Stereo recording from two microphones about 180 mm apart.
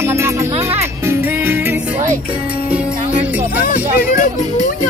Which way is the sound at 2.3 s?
30° right (ahead or behind).